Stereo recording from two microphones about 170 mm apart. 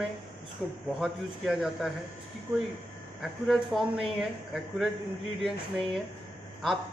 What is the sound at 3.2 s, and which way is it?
Speech, centre (ahead or behind).